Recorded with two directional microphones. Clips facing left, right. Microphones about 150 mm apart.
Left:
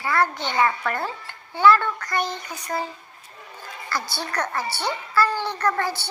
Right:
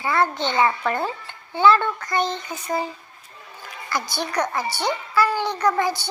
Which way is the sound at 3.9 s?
15° right (ahead or behind).